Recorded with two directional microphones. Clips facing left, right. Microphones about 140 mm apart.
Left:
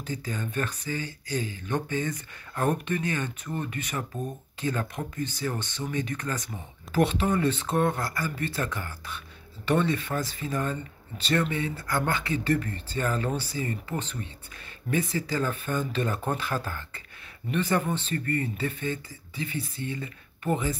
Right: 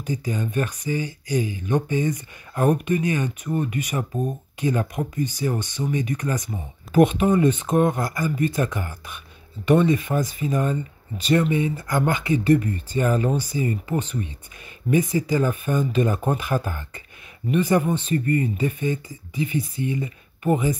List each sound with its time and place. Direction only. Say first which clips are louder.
0.0 s speech: right 6 dB; 15° right (ahead or behind)